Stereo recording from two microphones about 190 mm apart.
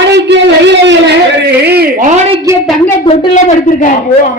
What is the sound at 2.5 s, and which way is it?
Speech, 15° right (ahead or behind).